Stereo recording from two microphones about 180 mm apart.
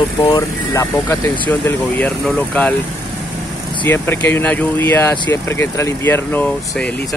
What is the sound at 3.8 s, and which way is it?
Speech, 10° left (ahead or behind).